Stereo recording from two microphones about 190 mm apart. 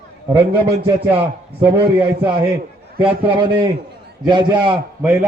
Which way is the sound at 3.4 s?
25° right (ahead or behind).